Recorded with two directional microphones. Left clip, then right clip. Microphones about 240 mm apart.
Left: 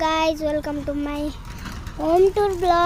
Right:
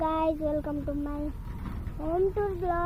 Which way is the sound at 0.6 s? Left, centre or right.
Left.